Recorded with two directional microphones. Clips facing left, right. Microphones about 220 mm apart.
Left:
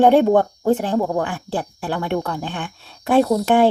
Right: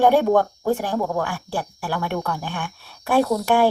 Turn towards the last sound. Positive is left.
turn(degrees=20)  # may be behind; listen again after turning